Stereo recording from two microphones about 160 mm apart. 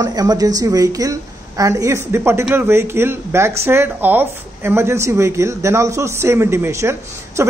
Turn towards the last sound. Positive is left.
turn(degrees=-15)  # may be behind; listen again after turning